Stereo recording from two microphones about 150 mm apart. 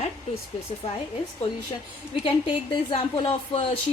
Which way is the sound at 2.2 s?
35° left (ahead or behind).